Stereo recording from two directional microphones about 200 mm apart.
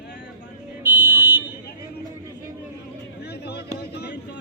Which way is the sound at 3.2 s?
55° left (ahead or behind).